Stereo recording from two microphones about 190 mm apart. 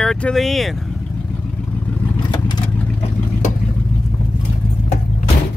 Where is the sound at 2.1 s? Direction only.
20° left (ahead or behind).